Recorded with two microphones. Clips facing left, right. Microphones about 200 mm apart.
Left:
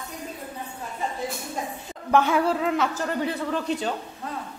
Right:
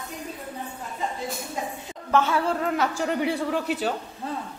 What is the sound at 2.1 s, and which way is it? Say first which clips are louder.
Speech: left 2 dB; 15° left (ahead or behind).